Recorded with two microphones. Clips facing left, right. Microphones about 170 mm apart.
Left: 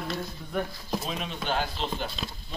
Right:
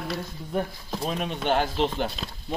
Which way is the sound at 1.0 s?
55° right (ahead or behind).